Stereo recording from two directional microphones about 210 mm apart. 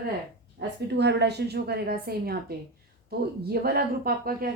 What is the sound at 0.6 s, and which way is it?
A woman's voice, 55° right (ahead or behind).